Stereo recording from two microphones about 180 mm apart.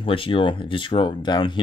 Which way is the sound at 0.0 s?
30° left (ahead or behind).